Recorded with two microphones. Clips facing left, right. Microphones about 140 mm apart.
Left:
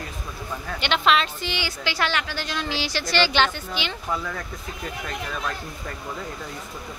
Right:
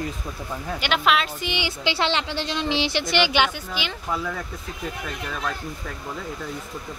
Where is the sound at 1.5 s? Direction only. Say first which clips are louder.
Right 5 dB; 20° right (ahead or behind); by 4.4 s 5° right (ahead or behind).